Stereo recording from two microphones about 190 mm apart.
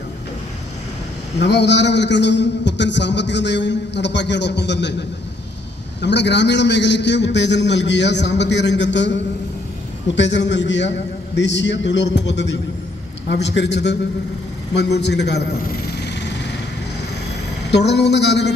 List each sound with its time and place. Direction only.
1.4 s a man's voice: 65° left (ahead or behind)
6.0 s a man's voice: 65° left (ahead or behind)
10.2 s a man's voice: 70° left (ahead or behind)
17.7 s speech: 65° left (ahead or behind)